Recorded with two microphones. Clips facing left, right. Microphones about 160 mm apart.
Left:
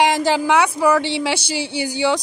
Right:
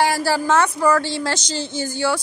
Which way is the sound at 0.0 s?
20° left (ahead or behind).